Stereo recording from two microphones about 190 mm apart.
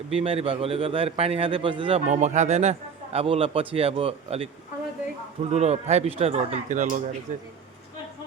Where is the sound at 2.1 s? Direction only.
40° right (ahead or behind).